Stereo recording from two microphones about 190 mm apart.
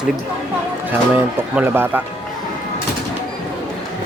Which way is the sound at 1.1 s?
10° right (ahead or behind).